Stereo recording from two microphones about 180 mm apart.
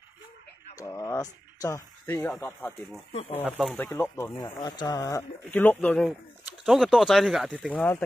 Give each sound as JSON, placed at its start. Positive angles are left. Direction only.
{"t": 0.7, "sound": "speech", "side_deg": 15}
{"t": 3.1, "sound": "speech", "side_deg": 35}
{"t": 3.5, "sound": "speech", "side_deg": 5}
{"t": 4.3, "sound": "speech", "side_deg": 25}